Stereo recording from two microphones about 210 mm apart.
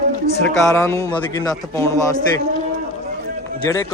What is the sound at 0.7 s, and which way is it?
A man's voice, 15° left (ahead or behind).